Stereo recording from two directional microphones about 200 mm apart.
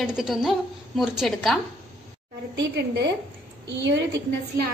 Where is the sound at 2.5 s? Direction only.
55° right (ahead or behind).